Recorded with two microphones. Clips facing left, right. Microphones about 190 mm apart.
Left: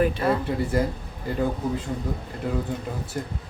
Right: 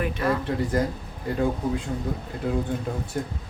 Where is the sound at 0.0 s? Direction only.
30° left (ahead or behind).